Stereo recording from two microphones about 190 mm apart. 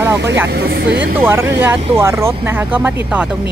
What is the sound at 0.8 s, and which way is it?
Speech, 65° right (ahead or behind).